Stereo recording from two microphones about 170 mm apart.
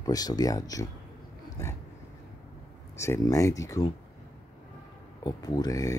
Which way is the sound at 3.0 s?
15° left (ahead or behind).